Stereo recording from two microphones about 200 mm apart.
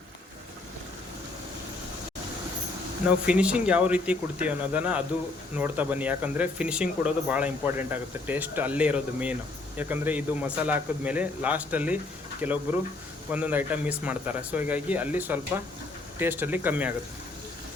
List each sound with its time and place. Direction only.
3.2 s speech: 5° right (ahead or behind)